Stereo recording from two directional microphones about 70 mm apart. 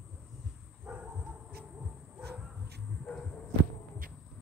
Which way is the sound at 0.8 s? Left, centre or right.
Right.